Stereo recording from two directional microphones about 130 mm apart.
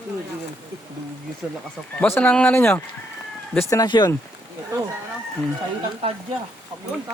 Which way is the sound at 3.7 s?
30° left (ahead or behind).